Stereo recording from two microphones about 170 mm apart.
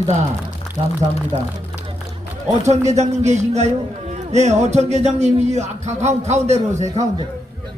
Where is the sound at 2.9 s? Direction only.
40° right (ahead or behind).